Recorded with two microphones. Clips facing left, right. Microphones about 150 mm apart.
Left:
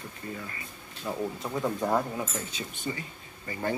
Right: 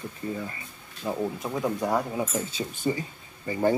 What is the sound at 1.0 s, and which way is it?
Speech, 15° right (ahead or behind).